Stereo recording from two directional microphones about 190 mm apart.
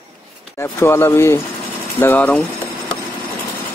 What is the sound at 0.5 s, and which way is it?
Speech, 15° left (ahead or behind).